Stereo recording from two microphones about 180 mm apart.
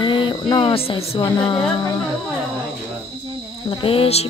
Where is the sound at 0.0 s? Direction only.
25° left (ahead or behind).